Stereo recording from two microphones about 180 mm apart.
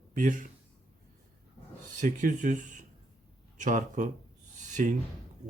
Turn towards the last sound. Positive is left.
turn(degrees=-45)  # may be behind; listen again after turning